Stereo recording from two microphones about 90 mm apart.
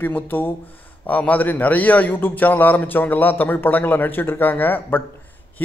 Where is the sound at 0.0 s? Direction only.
20° left (ahead or behind).